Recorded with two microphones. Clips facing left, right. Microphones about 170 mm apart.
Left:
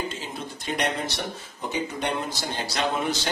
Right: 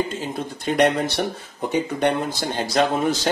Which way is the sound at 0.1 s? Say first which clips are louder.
Right 7 dB; 50° right (ahead or behind).